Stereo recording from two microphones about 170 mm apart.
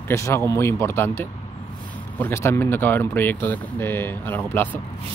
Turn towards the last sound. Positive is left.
turn(degrees=10)  # may be behind; listen again after turning